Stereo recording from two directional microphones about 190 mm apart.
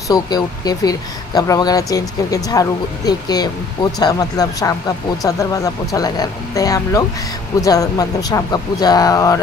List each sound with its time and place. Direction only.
0.1 s speech: 20° left (ahead or behind)